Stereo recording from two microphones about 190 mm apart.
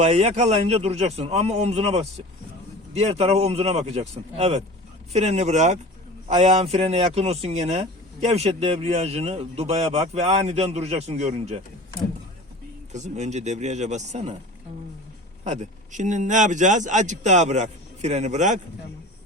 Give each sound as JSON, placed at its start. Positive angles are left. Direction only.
{"t": 0.0, "sound": "speech", "side_deg": -35}
{"t": 12.9, "sound": "speech", "side_deg": -35}
{"t": 15.4, "sound": "speech", "side_deg": -40}